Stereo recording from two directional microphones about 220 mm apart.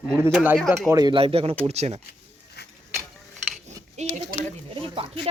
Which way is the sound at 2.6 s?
50° left (ahead or behind).